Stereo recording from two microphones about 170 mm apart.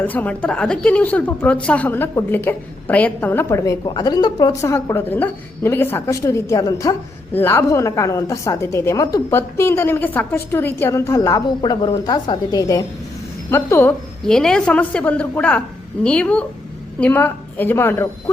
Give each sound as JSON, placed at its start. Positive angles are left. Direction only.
{"t": 0.0, "sound": "a woman's voice", "side_deg": 10}